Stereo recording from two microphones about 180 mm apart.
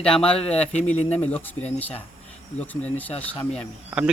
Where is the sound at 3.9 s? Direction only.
5° right (ahead or behind).